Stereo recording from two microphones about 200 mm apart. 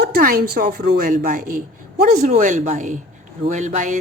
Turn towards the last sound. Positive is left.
turn(degrees=-40)  # may be behind; listen again after turning